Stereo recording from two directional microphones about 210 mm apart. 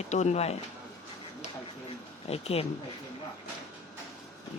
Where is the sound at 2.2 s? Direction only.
30° left (ahead or behind).